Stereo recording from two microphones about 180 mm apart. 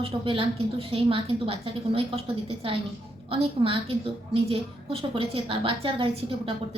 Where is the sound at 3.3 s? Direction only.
30° right (ahead or behind).